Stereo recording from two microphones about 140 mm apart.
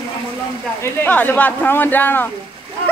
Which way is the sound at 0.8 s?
15° left (ahead or behind).